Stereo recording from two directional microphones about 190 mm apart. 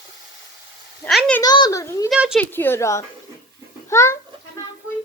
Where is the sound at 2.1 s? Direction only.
5° right (ahead or behind).